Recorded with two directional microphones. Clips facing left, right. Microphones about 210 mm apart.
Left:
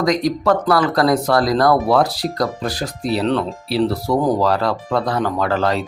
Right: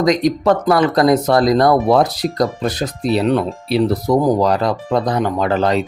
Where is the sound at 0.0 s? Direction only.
20° right (ahead or behind).